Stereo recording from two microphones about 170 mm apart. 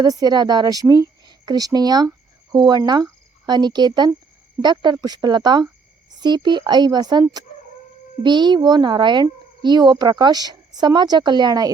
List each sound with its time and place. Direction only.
0.0 s speech: 20° right (ahead or behind)